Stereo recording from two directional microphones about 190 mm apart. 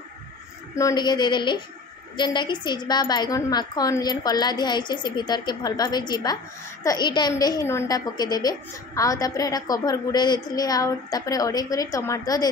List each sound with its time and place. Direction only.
0.7 s a woman's voice: 20° left (ahead or behind)